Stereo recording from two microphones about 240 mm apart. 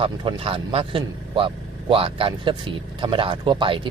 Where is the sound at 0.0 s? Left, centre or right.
Right.